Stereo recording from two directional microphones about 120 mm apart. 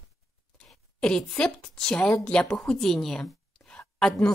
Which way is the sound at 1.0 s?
5° left (ahead or behind).